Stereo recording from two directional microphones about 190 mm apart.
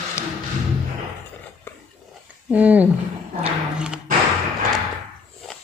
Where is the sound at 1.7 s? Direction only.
10° left (ahead or behind).